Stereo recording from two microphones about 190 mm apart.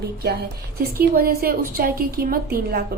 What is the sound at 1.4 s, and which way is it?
A woman's voice, 50° right (ahead or behind).